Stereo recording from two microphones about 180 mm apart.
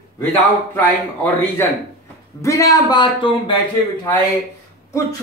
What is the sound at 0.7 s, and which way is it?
A man's voice, 10° left (ahead or behind).